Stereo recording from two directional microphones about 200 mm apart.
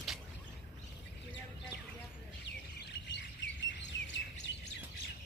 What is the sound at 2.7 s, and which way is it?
Bird, 55° left (ahead or behind).